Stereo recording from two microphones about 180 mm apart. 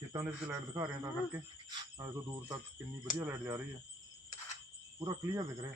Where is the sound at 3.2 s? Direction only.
15° right (ahead or behind).